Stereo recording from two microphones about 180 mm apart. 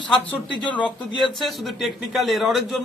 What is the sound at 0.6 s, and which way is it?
Speech, 25° left (ahead or behind).